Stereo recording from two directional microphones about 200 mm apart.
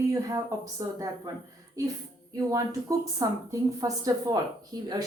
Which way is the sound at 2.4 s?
15° right (ahead or behind).